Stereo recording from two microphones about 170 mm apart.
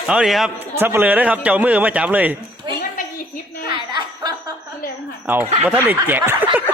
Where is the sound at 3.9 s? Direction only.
25° right (ahead or behind).